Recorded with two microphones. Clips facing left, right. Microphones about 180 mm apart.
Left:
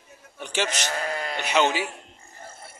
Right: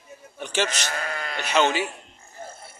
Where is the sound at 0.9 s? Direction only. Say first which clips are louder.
Left 2 dB; 25° left (ahead or behind).